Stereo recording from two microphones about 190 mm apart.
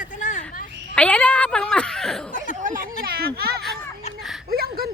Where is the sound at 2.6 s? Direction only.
50° right (ahead or behind).